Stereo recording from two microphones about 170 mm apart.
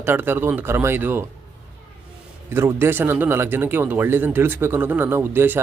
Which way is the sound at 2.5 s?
15° right (ahead or behind).